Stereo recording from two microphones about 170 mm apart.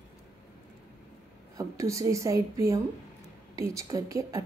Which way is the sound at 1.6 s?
20° right (ahead or behind).